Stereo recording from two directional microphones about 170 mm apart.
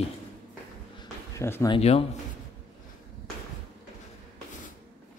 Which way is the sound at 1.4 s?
15° left (ahead or behind).